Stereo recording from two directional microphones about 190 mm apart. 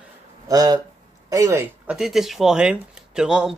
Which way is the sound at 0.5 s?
20° right (ahead or behind).